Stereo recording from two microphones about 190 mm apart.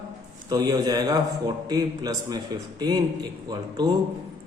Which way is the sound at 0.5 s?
20° right (ahead or behind).